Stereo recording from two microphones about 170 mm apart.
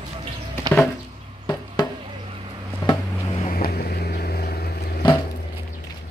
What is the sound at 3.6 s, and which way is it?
Vehicle, 65° left (ahead or behind).